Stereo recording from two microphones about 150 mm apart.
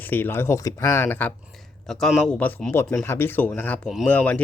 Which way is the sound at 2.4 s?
10° left (ahead or behind).